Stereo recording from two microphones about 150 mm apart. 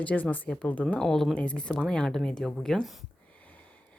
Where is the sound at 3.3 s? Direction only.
10° left (ahead or behind).